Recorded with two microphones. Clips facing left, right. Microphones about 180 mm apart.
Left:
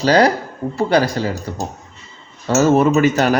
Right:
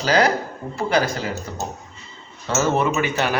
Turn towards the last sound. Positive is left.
turn(degrees=40)  # may be behind; listen again after turning